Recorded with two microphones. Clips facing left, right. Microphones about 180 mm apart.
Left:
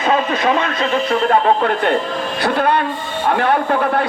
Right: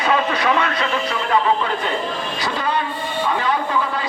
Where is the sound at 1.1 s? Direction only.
50° left (ahead or behind).